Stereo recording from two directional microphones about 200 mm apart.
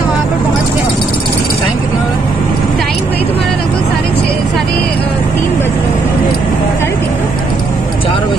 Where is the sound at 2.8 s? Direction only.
Centre (ahead or behind).